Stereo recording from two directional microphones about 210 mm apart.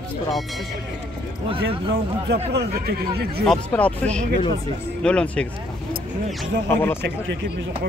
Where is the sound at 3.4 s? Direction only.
5° left (ahead or behind).